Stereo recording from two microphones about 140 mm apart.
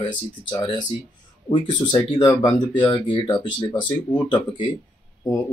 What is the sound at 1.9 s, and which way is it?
Speech, 30° left (ahead or behind).